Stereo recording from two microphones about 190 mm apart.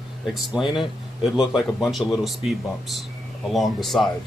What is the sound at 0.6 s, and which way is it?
Speech, 25° left (ahead or behind).